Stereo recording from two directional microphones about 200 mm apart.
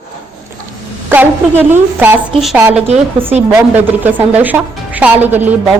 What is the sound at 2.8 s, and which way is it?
Speech, 30° right (ahead or behind).